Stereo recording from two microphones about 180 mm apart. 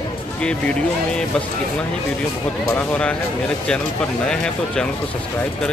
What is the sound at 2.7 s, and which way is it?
Speech, 10° left (ahead or behind).